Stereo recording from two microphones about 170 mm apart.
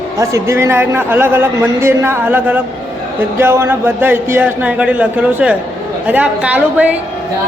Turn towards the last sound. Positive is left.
turn(degrees=-10)  # may be behind; listen again after turning